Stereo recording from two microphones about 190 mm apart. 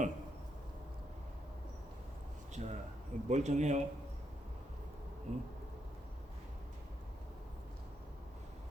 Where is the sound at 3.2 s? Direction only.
40° right (ahead or behind).